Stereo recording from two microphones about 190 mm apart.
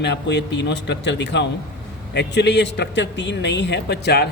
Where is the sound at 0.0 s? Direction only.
65° left (ahead or behind).